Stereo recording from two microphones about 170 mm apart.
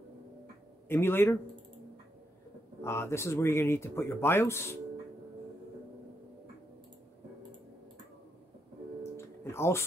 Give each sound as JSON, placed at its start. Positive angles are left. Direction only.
{"t": 0.8, "sound": "speech", "side_deg": 15}
{"t": 2.8, "sound": "speech", "side_deg": 15}
{"t": 9.1, "sound": "music", "side_deg": 15}